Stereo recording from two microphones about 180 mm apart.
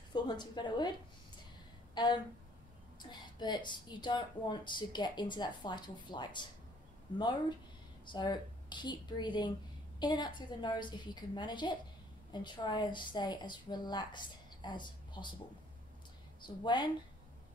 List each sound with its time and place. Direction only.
0.1 s a woman's voice: 25° left (ahead or behind)
2.0 s speech: 25° left (ahead or behind)
16.3 s speech: 25° left (ahead or behind)